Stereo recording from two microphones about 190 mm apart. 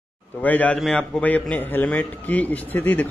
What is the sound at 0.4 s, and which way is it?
A man's voice, 10° left (ahead or behind).